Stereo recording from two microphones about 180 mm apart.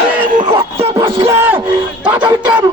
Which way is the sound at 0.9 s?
15° right (ahead or behind).